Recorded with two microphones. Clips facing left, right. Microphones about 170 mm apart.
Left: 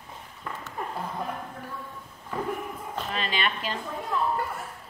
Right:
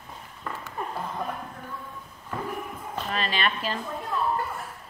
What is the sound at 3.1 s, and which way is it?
Speech, 45° right (ahead or behind).